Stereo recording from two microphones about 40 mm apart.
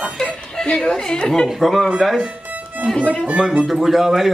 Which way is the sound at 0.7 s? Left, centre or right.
Centre.